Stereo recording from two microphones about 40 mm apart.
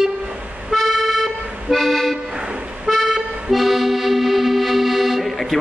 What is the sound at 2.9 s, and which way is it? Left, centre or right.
Accordion, centre.